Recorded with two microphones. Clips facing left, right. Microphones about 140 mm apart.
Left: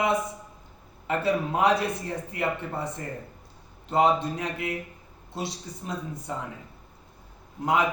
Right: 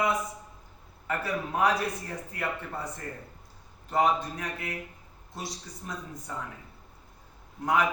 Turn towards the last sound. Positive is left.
turn(degrees=20)  # may be behind; listen again after turning